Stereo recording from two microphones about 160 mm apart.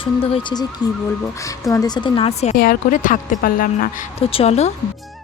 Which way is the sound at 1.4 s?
20° left (ahead or behind).